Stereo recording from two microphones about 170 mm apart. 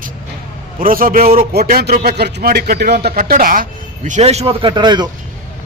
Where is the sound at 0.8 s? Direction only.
55° right (ahead or behind).